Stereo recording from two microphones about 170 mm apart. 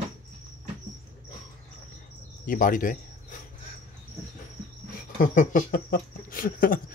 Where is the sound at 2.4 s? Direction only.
50° left (ahead or behind).